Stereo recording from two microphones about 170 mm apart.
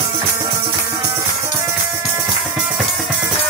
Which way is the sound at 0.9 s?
15° right (ahead or behind).